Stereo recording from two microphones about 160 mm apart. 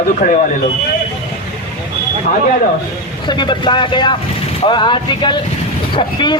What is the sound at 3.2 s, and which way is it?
Speech, 30° left (ahead or behind).